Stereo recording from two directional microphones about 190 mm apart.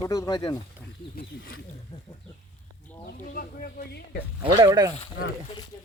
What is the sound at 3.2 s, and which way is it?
Speech, 45° left (ahead or behind).